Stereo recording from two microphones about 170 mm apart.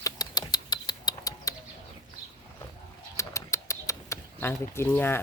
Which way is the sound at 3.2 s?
15° left (ahead or behind).